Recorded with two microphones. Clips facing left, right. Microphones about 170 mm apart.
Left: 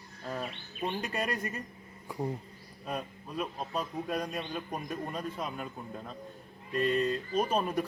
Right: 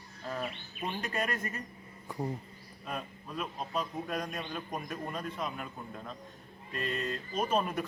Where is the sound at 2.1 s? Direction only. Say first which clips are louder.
Left 1 dB; 10° left (ahead or behind).